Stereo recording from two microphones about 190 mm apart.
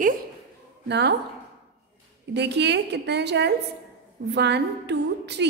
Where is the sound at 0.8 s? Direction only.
60° right (ahead or behind).